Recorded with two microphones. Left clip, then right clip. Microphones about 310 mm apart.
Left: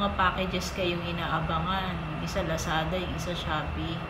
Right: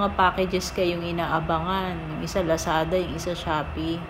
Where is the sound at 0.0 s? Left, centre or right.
Centre.